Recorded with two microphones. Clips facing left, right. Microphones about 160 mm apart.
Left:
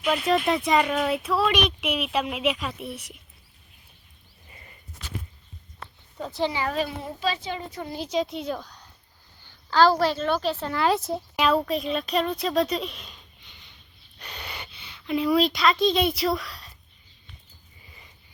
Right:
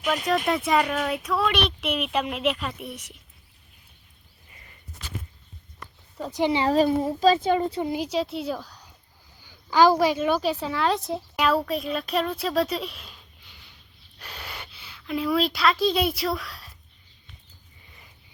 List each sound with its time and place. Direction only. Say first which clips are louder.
0.1 s speech: left 1 dB; centre (ahead or behind)
6.3 s speech: right 5 dB; 20° right (ahead or behind)
6.7 s speech: right 8 dB; 40° right (ahead or behind)
7.7 s speech: right 6 dB; 20° right (ahead or behind)
8.0 s a woman's voice: even; 5° right (ahead or behind)